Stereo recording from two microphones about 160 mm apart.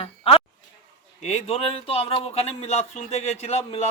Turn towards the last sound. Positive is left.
turn(degrees=40)  # may be behind; listen again after turning